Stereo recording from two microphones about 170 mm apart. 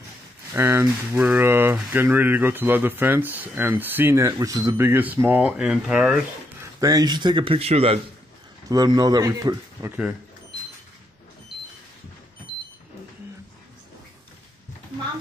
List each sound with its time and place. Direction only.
0.5 s speech: 15° right (ahead or behind)
6.6 s speech: 20° right (ahead or behind); by 8.0 s 35° right (ahead or behind)
8.6 s speech: 20° right (ahead or behind)